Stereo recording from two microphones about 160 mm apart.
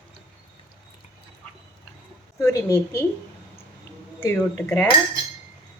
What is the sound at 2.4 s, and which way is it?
Speech, 15° left (ahead or behind).